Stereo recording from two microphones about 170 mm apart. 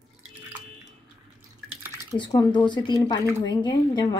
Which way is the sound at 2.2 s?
25° left (ahead or behind).